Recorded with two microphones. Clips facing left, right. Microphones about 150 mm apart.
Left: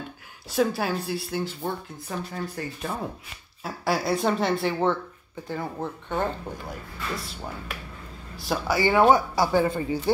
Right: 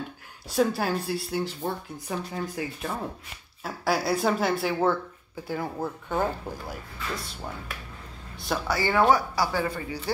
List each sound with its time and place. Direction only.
0.5 s speech: centre (ahead or behind)
8.6 s speech: 15° left (ahead or behind)